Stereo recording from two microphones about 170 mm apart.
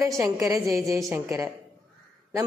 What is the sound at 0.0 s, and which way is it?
Speech, 15° right (ahead or behind).